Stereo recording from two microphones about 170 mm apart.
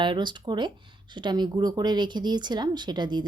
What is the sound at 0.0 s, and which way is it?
Speech, 25° right (ahead or behind).